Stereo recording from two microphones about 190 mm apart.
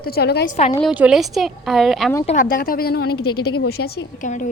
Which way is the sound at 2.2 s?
40° left (ahead or behind).